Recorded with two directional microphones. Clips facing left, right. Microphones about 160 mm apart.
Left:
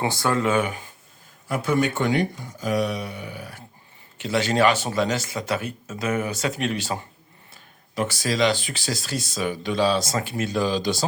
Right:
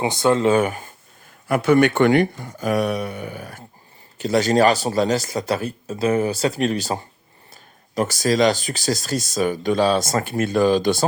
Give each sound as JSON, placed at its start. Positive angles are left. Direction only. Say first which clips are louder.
{"t": 0.0, "sound": "speech", "louder": "right 5 dB", "side_deg": -20}
{"t": 0.5, "sound": "speech", "louder": "right 5 dB", "side_deg": -45}
{"t": 1.5, "sound": "speech", "louder": "right 7 dB", "side_deg": -70}